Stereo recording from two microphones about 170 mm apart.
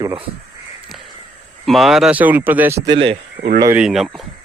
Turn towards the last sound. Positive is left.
turn(degrees=0)  # may be behind; listen again after turning